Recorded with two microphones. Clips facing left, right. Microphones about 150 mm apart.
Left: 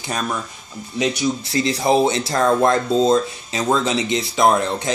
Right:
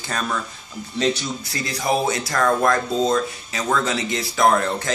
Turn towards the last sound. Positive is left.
turn(degrees=20)  # may be behind; listen again after turning